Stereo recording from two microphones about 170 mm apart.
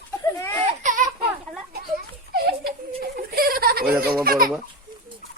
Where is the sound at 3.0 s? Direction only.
65° right (ahead or behind).